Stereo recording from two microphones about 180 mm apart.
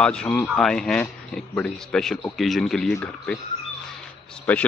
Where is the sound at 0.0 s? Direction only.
5° left (ahead or behind).